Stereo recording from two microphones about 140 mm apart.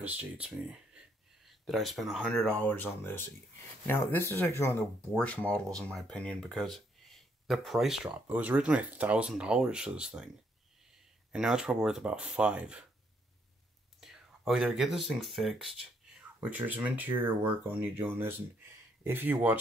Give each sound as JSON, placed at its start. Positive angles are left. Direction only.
{"t": 0.0, "sound": "speech", "side_deg": -10}
{"t": 11.3, "sound": "speech", "side_deg": -5}
{"t": 14.0, "sound": "speech", "side_deg": -5}